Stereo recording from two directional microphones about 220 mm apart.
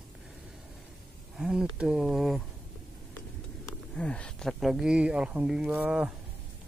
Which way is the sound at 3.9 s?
5° left (ahead or behind).